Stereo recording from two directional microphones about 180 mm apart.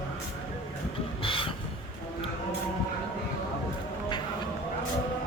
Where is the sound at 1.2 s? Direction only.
30° left (ahead or behind).